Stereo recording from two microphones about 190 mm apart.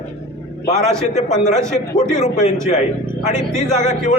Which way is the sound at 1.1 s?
40° left (ahead or behind).